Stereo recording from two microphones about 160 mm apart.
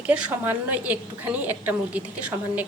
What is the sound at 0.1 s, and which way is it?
A woman's voice, 10° right (ahead or behind).